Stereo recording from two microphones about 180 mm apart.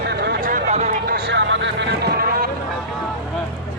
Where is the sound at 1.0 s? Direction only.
60° right (ahead or behind).